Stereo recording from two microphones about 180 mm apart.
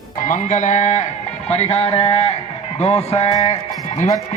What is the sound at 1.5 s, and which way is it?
Music, 35° left (ahead or behind).